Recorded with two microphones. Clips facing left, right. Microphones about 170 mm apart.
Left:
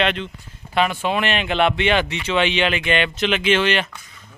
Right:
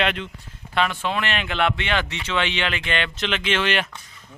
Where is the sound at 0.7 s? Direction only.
10° left (ahead or behind).